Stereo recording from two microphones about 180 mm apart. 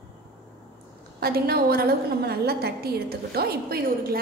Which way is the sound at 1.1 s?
60° right (ahead or behind).